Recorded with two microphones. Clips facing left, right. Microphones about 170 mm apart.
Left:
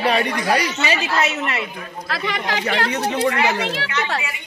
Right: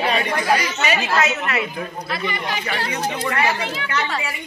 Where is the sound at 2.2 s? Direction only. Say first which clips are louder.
Left 4 dB; 90° left.